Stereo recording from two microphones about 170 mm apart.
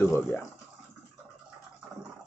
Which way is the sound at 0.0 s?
15° left (ahead or behind).